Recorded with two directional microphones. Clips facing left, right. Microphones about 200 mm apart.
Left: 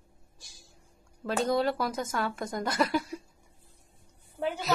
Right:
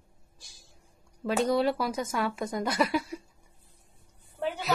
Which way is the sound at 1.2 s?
10° right (ahead or behind).